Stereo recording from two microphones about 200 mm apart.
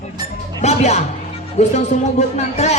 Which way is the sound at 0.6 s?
35° left (ahead or behind).